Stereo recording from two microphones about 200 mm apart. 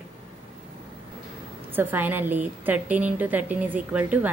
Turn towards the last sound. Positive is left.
turn(degrees=-5)  # may be behind; listen again after turning